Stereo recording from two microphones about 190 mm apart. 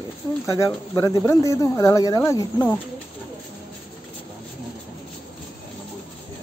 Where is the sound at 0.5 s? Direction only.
20° left (ahead or behind).